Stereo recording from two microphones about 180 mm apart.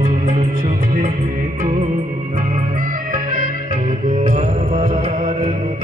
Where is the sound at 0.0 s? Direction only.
45° right (ahead or behind).